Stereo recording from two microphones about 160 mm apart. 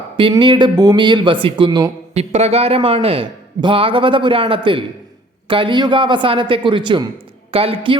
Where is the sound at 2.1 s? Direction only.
40° right (ahead or behind).